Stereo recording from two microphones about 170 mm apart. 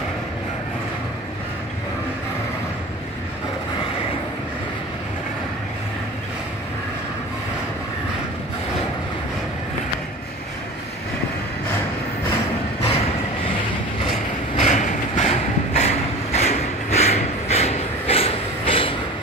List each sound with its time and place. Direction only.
14.6 s vehicle: 40° left (ahead or behind)